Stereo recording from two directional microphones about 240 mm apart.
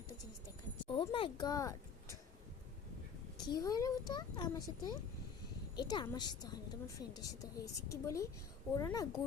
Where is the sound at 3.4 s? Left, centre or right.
Centre.